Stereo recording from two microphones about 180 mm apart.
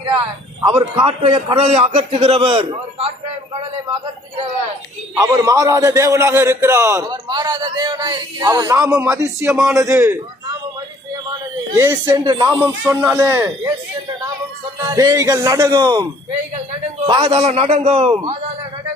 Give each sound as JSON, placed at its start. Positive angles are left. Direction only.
{"t": 0.9, "sound": "a man's voice", "side_deg": -30}
{"t": 5.1, "sound": "a man's voice", "side_deg": -15}
{"t": 11.8, "sound": "a man's voice", "side_deg": -15}
{"t": 12.2, "sound": "speech", "side_deg": -25}
{"t": 12.8, "sound": "a man's voice", "side_deg": -10}
{"t": 14.8, "sound": "speech", "side_deg": -20}
{"t": 17.1, "sound": "a man's voice", "side_deg": -30}